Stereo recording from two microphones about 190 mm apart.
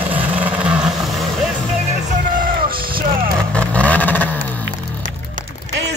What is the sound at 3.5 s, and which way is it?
Vehicle, 5° left (ahead or behind).